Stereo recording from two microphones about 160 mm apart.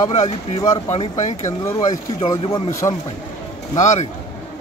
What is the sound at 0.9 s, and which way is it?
Speech, 45° left (ahead or behind).